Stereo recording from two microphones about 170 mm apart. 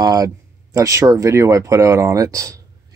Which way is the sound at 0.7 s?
20° right (ahead or behind).